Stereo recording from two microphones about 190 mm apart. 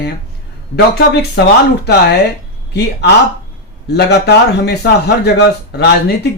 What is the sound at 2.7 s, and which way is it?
A man's voice, 60° left (ahead or behind).